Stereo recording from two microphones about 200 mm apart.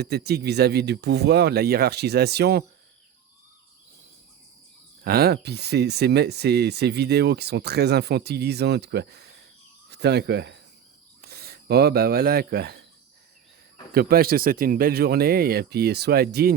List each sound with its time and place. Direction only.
0.0 s speech: 55° right (ahead or behind)
5.0 s speech: 50° right (ahead or behind)
13.9 s speech: 50° right (ahead or behind)